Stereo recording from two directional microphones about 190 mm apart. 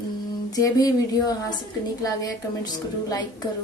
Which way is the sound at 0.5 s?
20° left (ahead or behind).